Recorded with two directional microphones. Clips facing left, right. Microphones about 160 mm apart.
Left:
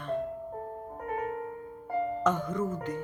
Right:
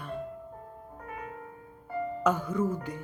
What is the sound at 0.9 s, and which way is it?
Music, 35° left (ahead or behind).